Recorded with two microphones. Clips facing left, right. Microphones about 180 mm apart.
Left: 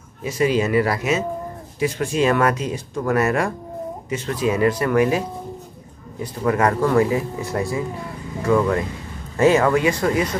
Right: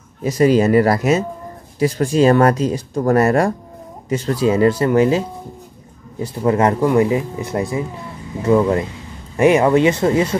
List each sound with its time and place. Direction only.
0.2 s speech: 40° right (ahead or behind)
6.2 s speech: 25° right (ahead or behind)